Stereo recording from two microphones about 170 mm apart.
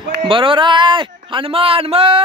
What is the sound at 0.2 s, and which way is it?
A man's voice, 30° right (ahead or behind).